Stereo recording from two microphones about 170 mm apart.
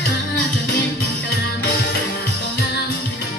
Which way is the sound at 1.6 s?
70° left (ahead or behind).